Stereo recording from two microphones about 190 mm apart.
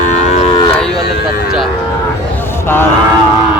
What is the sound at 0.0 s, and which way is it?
Moo, 35° left (ahead or behind).